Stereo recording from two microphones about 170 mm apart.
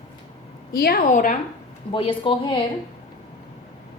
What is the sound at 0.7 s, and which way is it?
Speech, 60° left (ahead or behind).